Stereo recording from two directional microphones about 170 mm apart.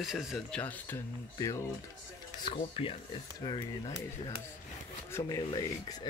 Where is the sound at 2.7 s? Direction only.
35° left (ahead or behind).